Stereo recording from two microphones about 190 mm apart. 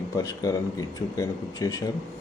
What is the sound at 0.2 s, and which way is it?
Speech, 20° left (ahead or behind).